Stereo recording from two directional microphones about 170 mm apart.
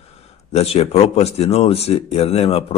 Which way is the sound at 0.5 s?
35° left (ahead or behind).